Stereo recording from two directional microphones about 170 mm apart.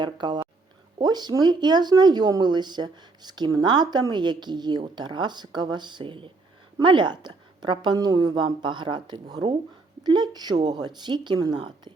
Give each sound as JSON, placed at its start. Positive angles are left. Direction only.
{"t": 0.0, "sound": "speech", "side_deg": -25}